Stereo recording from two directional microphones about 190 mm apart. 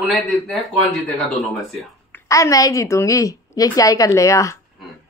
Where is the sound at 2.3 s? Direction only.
15° left (ahead or behind).